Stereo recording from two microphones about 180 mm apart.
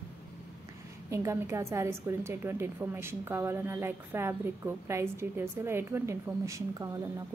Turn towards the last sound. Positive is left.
turn(degrees=-15)  # may be behind; listen again after turning